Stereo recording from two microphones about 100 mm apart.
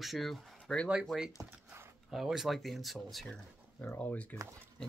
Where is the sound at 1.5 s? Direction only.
25° right (ahead or behind).